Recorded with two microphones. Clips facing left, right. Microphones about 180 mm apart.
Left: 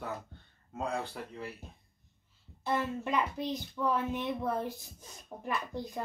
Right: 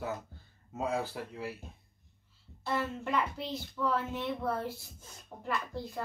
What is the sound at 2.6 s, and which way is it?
Speech, 15° left (ahead or behind).